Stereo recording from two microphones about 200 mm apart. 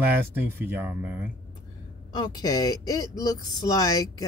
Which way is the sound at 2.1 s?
20° left (ahead or behind).